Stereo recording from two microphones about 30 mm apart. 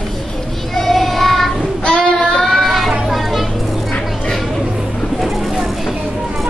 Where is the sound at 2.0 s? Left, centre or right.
Centre.